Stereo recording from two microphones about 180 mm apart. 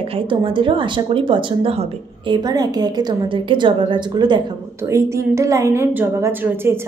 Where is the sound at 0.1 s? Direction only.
30° right (ahead or behind).